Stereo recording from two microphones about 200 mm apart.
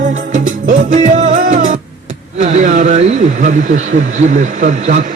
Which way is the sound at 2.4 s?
40° right (ahead or behind).